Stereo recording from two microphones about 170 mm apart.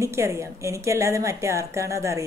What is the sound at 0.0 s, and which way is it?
Speech, 15° right (ahead or behind).